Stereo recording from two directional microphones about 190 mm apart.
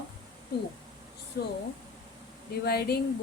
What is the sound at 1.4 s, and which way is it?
Speech, 55° left (ahead or behind).